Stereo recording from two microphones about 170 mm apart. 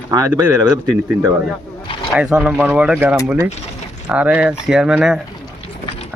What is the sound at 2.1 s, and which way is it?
Speech, 5° right (ahead or behind).